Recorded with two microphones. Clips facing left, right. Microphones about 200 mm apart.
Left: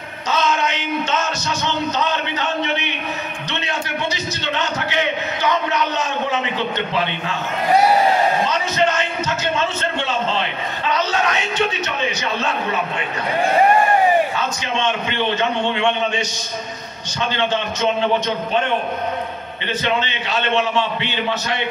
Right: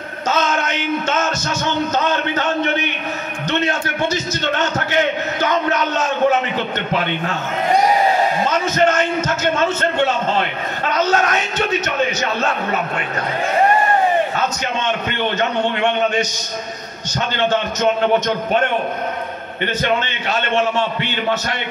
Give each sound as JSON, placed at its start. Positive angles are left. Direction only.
{"t": 0.3, "sound": "music", "side_deg": -45}
{"t": 1.6, "sound": "a man's voice", "side_deg": -50}
{"t": 5.4, "sound": "a sound", "side_deg": -45}
{"t": 8.5, "sound": "a man's voice", "side_deg": -45}
{"t": 14.3, "sound": "a man's voice", "side_deg": -45}
{"t": 19.6, "sound": "a man's voice", "side_deg": -50}